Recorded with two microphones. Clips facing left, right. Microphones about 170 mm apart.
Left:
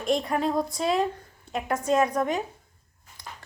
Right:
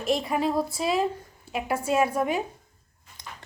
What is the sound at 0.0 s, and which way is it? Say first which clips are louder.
A woman's voice: even; 5° right (ahead or behind).